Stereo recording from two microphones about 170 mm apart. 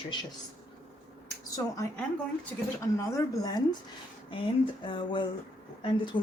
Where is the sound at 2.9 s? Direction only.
20° left (ahead or behind).